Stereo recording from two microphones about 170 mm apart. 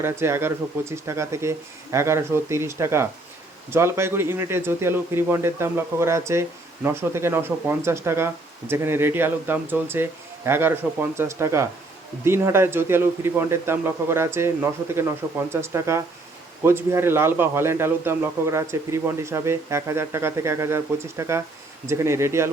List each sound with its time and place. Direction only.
0.0 s speech: 15° right (ahead or behind)